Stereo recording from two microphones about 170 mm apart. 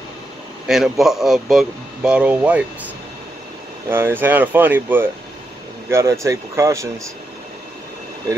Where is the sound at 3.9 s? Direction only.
15° right (ahead or behind).